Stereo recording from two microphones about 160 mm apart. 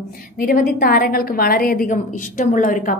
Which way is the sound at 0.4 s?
70° left (ahead or behind).